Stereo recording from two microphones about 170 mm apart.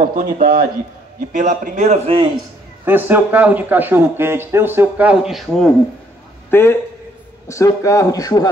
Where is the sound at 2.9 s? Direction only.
10° right (ahead or behind).